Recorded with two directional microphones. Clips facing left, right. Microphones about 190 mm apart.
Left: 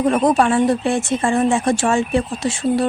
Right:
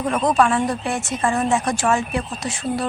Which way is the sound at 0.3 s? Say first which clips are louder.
Even; 30° left (ahead or behind).